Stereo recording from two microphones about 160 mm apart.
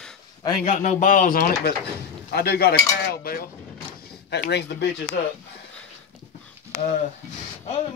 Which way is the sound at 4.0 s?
85° left.